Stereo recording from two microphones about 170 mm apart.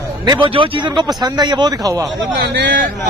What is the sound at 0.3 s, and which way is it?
A man's voice, 25° right (ahead or behind).